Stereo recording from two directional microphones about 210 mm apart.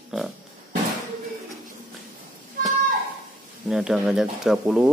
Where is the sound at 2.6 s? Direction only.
40° right (ahead or behind).